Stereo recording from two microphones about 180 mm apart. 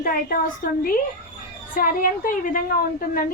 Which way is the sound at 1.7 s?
50° left (ahead or behind).